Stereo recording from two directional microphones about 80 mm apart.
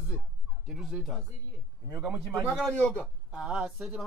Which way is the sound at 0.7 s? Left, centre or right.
Centre.